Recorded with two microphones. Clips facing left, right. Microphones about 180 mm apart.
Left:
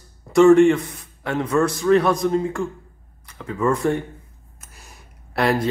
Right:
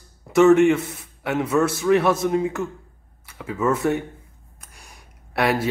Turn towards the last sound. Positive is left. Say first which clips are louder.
# left 1 dB
turn(degrees=0)  # may be behind; listen again after turning